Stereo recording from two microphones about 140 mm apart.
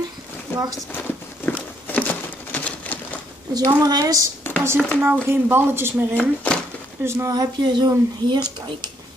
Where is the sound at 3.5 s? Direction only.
30° right (ahead or behind).